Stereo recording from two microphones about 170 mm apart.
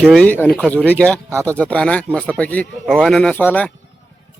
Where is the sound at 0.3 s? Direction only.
10° left (ahead or behind).